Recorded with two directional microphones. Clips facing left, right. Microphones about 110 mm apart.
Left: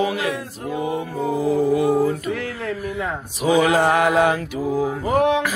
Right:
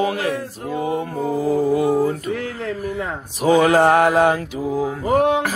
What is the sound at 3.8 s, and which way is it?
Mantra, 50° right (ahead or behind).